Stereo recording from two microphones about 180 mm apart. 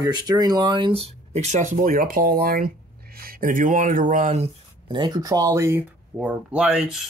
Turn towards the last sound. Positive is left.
turn(degrees=-5)  # may be behind; listen again after turning